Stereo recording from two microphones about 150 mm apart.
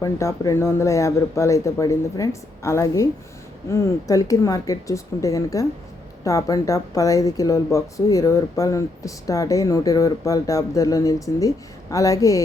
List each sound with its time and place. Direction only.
0.0 s speech: 20° left (ahead or behind)